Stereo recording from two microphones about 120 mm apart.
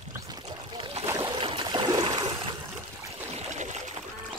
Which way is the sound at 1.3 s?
45° right (ahead or behind).